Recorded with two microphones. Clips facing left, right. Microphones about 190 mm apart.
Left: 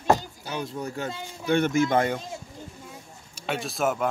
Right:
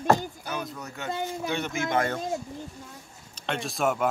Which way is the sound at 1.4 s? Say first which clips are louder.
Left 11 dB; 50° left (ahead or behind).